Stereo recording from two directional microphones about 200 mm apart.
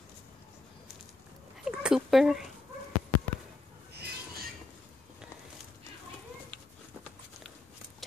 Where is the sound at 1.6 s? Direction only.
5° right (ahead or behind).